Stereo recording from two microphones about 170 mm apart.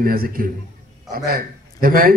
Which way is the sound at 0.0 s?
60° right (ahead or behind).